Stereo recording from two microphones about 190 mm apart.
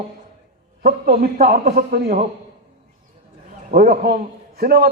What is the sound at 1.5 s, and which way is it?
Speech, 35° right (ahead or behind).